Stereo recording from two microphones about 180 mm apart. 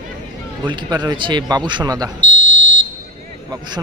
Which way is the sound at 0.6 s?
25° right (ahead or behind).